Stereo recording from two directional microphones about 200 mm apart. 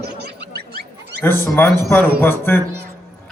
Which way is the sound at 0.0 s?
55° right (ahead or behind).